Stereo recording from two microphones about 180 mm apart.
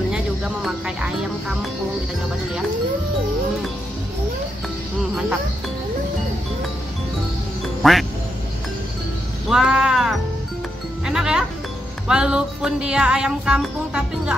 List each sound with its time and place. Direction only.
0.1 s speech: 5° right (ahead or behind)
7.8 s speech: centre (ahead or behind)
9.5 s a sound: 5° right (ahead or behind)
11.1 s music: 5° right (ahead or behind)